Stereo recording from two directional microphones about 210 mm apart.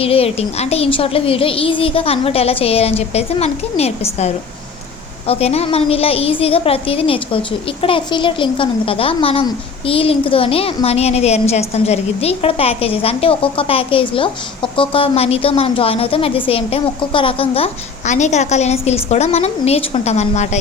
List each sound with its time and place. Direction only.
0.0 s a woman's voice: 30° left (ahead or behind)